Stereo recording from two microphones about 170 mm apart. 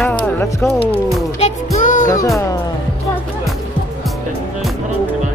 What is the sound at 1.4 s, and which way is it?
Music, 45° left (ahead or behind).